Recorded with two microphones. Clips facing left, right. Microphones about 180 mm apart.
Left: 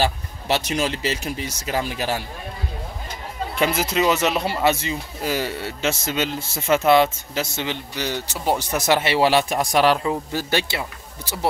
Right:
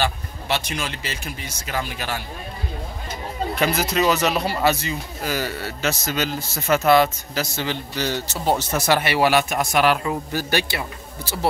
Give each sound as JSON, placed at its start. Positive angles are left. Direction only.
{"t": 0.0, "sound": "speech", "side_deg": 40}
{"t": 3.5, "sound": "a man's voice", "side_deg": 25}